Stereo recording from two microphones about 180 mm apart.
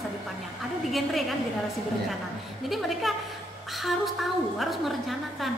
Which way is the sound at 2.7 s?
Centre (ahead or behind).